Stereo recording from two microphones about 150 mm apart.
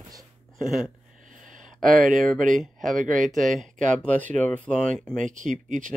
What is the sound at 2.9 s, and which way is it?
Speech, 60° right (ahead or behind).